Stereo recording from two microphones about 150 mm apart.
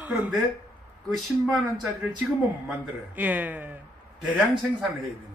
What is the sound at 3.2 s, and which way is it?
Speech, 10° right (ahead or behind).